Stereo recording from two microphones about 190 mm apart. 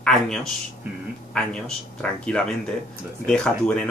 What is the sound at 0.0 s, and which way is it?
Speech, centre (ahead or behind).